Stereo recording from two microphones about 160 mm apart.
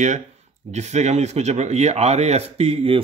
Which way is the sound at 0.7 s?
45° right (ahead or behind).